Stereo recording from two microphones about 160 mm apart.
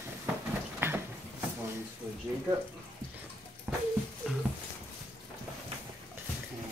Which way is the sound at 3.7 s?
10° right (ahead or behind).